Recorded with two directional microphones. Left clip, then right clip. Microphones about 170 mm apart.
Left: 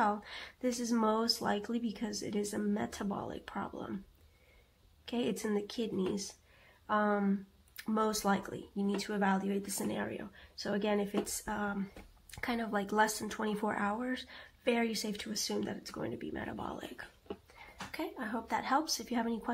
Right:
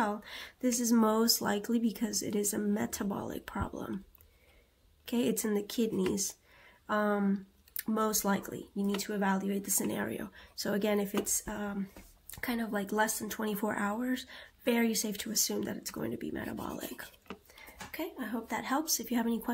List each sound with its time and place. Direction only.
0.0 s speech: 25° right (ahead or behind)
5.0 s speech: 30° right (ahead or behind)
17.9 s speech: 15° right (ahead or behind)